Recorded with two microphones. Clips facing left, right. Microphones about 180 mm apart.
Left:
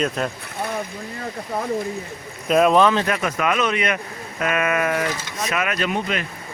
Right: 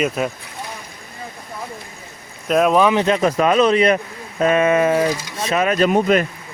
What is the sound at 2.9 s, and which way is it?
Speech, 15° right (ahead or behind).